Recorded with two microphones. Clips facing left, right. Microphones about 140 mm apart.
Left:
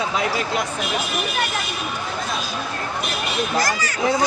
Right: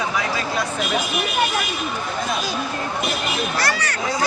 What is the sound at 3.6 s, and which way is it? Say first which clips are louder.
Speech: even; 70° right (ahead or behind).